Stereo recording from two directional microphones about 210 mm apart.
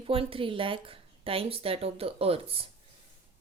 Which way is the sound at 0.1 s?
25° right (ahead or behind).